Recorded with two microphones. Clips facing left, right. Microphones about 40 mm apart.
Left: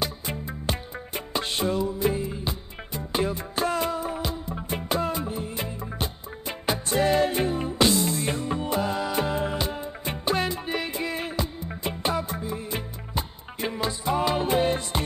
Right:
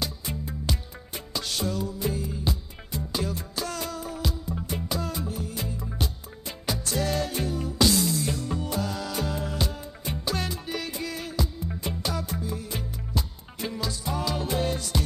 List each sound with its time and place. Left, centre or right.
0.0 s music: left